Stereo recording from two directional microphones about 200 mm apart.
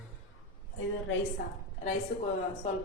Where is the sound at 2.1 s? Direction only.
75° left (ahead or behind).